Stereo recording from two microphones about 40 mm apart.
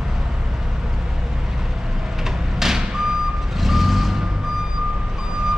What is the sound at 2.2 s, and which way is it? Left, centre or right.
Door, centre.